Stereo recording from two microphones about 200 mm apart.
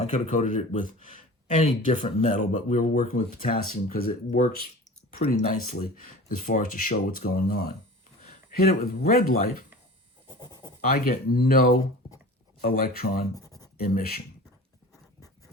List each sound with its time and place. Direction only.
0.0 s speech: 40° left (ahead or behind)
10.2 s goat: 20° left (ahead or behind)
10.8 s speech: 45° left (ahead or behind)
13.3 s writing: 15° left (ahead or behind)
13.7 s speech: 45° left (ahead or behind)